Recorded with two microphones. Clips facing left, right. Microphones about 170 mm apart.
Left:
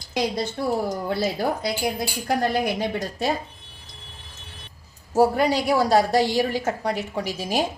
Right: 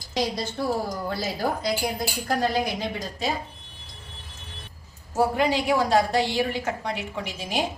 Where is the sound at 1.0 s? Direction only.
65° left (ahead or behind).